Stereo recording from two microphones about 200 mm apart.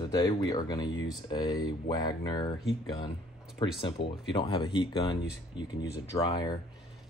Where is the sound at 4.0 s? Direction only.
60° left (ahead or behind).